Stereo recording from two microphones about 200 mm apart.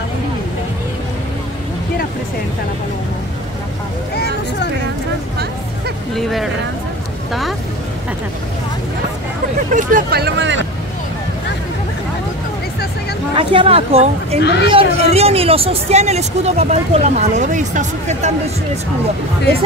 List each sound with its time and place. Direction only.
6.1 s speech: centre (ahead or behind)
9.7 s speech: 40° right (ahead or behind); by 10.6 s 60° right (ahead or behind)
13.4 s a woman's voice: 25° right (ahead or behind)
14.4 s speech: 60° left (ahead or behind)
14.7 s speech: 30° right (ahead or behind)